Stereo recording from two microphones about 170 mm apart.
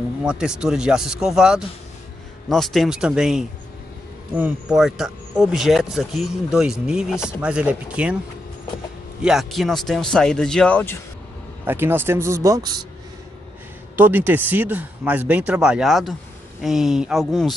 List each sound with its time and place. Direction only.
0.2 s speech: 5° right (ahead or behind)
9.2 s speech: centre (ahead or behind)
11.6 s speech: 15° right (ahead or behind)
13.9 s speech: 10° right (ahead or behind)